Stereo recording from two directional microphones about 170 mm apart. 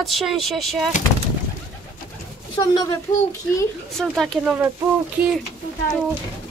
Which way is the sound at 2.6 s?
20° left (ahead or behind).